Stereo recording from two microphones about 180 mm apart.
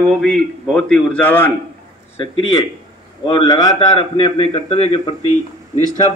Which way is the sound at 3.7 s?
30° left (ahead or behind).